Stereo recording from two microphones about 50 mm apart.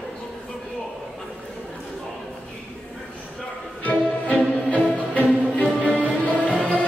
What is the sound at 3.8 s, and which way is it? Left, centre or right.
Music, left.